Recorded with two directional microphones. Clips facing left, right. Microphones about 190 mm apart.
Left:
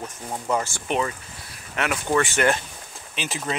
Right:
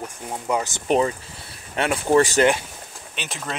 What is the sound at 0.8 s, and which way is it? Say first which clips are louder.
Speech: right 5 dB; 30° right (ahead or behind).